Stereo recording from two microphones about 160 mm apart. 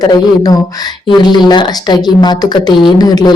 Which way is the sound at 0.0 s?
25° left (ahead or behind).